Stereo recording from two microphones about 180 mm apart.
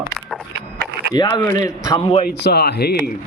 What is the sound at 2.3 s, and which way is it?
Speech, 65° left (ahead or behind).